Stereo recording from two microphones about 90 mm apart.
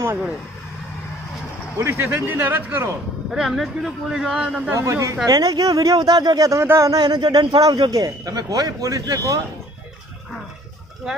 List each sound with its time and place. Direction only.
1.8 s a man's voice: 25° right (ahead or behind)
3.3 s speech: centre (ahead or behind)
4.7 s a man's voice: 35° right (ahead or behind)
6.9 s a man's voice: 50° right (ahead or behind)